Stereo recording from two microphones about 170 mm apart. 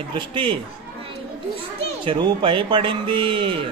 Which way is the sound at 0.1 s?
30° right (ahead or behind).